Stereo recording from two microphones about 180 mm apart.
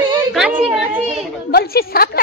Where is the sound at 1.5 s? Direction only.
60° left (ahead or behind).